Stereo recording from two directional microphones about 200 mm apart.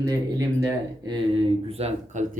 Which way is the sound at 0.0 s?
15° right (ahead or behind).